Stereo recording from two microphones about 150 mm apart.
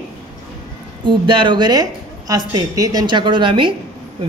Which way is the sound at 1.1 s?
35° right (ahead or behind).